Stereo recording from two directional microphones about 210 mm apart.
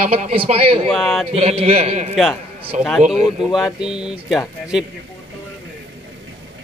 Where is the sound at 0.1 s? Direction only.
30° right (ahead or behind).